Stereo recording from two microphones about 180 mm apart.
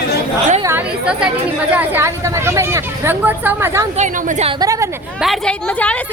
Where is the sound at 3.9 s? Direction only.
45° right (ahead or behind).